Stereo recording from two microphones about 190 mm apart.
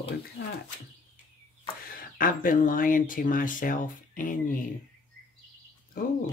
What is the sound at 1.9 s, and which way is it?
Speech, 50° left (ahead or behind).